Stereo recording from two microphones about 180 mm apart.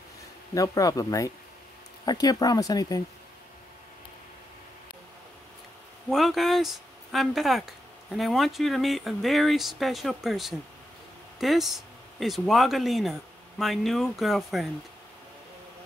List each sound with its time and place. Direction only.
0.6 s speech: 20° left (ahead or behind)
6.0 s speech: centre (ahead or behind)